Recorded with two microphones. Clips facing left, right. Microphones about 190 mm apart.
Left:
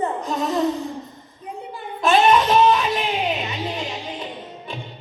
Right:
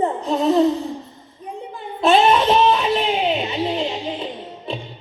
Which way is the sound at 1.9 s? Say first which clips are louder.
Right 1 dB; 30° right (ahead or behind).